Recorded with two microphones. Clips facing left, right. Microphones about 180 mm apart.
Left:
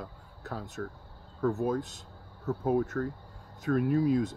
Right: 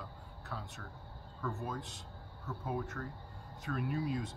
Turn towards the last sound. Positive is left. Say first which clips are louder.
# left 11 dB
turn(degrees=45)  # may be behind; listen again after turning